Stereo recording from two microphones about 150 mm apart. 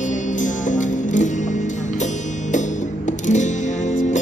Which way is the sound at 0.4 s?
55° left (ahead or behind).